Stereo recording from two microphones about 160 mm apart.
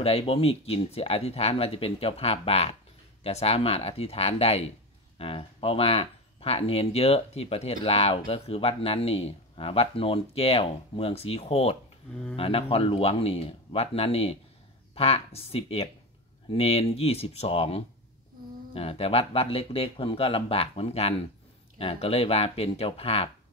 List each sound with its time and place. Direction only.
0.0 s speech: 35° left (ahead or behind)